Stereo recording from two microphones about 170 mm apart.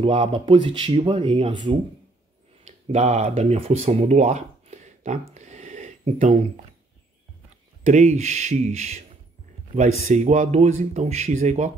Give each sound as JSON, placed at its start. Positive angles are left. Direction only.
{"t": 0.0, "sound": "speech", "side_deg": -35}
{"t": 2.6, "sound": "speech", "side_deg": -40}
{"t": 7.8, "sound": "speech", "side_deg": -45}